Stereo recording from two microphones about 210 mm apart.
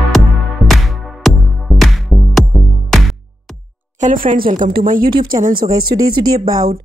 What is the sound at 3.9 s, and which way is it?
Speech, 40° right (ahead or behind).